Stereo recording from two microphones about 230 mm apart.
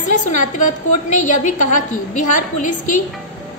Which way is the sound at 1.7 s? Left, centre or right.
Left.